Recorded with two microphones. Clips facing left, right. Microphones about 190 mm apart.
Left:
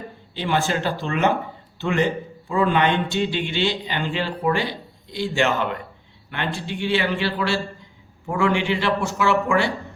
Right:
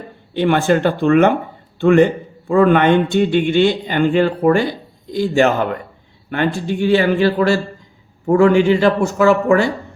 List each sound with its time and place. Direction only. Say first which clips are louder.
0.3 s a man's voice: right 9 dB; 55° right (ahead or behind)